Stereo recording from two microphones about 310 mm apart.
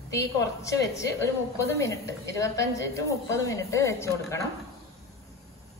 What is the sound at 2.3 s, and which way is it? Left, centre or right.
A woman's voice, centre.